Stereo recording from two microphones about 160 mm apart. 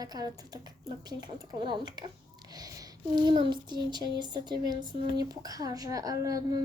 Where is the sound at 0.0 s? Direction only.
25° right (ahead or behind).